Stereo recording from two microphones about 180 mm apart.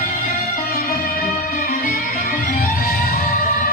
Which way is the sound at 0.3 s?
50° left (ahead or behind).